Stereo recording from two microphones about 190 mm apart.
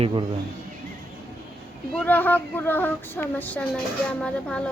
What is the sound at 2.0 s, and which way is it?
A woman's voice, 10° left (ahead or behind).